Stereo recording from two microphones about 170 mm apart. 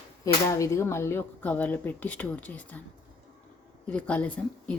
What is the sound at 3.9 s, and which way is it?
Speech, 10° left (ahead or behind).